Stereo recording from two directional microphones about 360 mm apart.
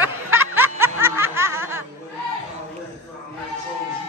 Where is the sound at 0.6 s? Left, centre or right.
Centre.